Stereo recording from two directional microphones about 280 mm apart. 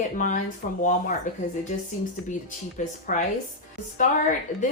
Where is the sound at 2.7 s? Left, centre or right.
Left.